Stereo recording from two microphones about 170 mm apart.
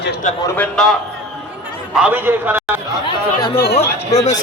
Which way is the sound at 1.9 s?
10° right (ahead or behind).